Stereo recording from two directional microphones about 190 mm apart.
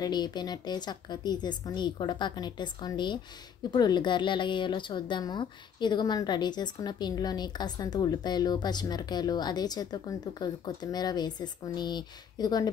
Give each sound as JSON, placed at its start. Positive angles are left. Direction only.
{"t": 0.0, "sound": "a woman's voice", "side_deg": 20}